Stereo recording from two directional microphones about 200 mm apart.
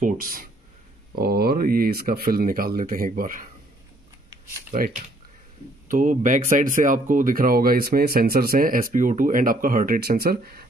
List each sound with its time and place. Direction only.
0.0 s speech: 45° right (ahead or behind)
4.6 s speech: 45° right (ahead or behind)